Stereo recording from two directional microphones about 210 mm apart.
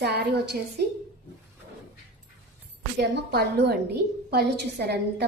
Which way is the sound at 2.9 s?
55° right (ahead or behind).